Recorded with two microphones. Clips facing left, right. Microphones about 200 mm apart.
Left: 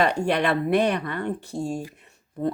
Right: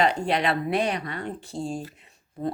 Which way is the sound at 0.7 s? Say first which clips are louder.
Left 4 dB; 60° left (ahead or behind).